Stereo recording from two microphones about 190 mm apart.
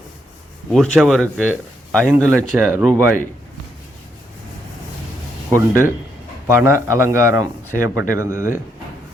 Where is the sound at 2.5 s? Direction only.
10° right (ahead or behind).